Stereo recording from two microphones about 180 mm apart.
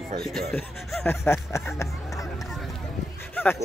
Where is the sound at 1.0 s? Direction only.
15° left (ahead or behind).